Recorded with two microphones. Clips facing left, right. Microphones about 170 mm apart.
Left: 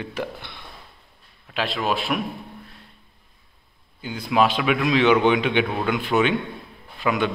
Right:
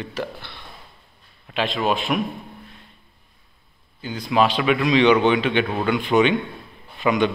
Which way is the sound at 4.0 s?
10° left (ahead or behind).